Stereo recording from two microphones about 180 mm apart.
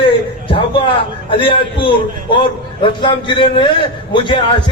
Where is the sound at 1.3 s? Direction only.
30° left (ahead or behind).